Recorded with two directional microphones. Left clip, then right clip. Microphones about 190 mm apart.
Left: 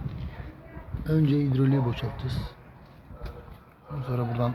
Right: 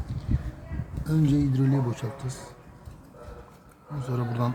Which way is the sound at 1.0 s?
Centre (ahead or behind).